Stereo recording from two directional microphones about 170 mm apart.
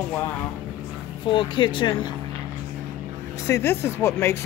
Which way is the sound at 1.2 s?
30° left (ahead or behind).